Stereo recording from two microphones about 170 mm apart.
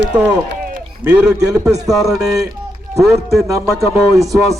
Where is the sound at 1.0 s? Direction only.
10° right (ahead or behind).